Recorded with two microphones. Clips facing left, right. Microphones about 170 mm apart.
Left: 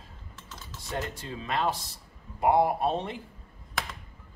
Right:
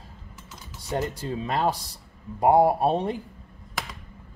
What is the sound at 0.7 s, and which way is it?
Typing, 15° right (ahead or behind).